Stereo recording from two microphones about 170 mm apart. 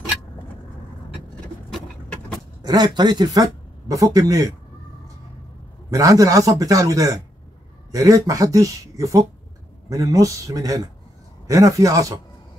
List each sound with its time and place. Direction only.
1.7 s vehicle: 5° left (ahead or behind)
2.6 s speech: 25° right (ahead or behind)
5.9 s speech: 20° right (ahead or behind)